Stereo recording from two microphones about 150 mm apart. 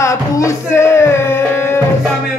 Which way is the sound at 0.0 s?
20° left (ahead or behind).